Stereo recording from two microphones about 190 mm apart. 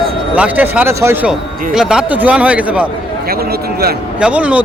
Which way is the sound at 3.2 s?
55° right (ahead or behind).